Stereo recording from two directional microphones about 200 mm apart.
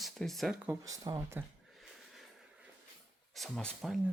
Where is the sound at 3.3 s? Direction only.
Centre (ahead or behind).